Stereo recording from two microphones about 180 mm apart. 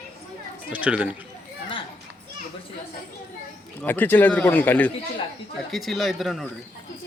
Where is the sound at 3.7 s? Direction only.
10° left (ahead or behind).